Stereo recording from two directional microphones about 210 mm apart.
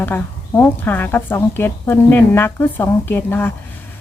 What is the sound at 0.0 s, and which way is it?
Speech, 10° left (ahead or behind).